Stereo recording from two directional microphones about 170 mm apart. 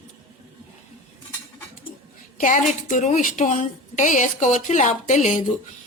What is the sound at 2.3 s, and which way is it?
A woman's voice, 50° left (ahead or behind).